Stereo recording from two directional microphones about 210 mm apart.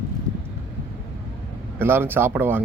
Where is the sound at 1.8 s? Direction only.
10° right (ahead or behind).